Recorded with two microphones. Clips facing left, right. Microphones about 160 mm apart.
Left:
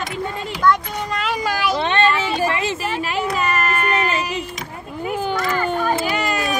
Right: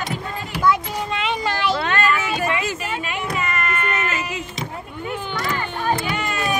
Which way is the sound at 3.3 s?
35° left (ahead or behind).